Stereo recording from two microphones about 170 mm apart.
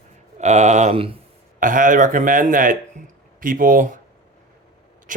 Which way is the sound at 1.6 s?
50° right (ahead or behind).